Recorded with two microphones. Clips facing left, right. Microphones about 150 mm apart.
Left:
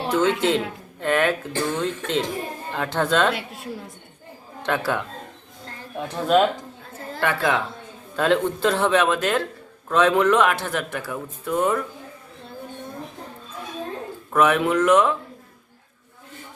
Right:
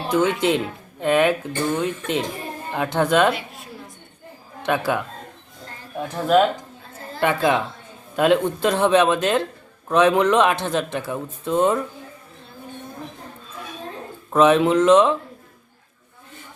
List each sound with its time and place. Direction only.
0.1 s speech: 15° right (ahead or behind)
4.6 s speech: 15° right (ahead or behind)
6.0 s speech: 5° right (ahead or behind)
7.2 s a man's voice: 20° right (ahead or behind)
14.3 s a man's voice: 20° right (ahead or behind)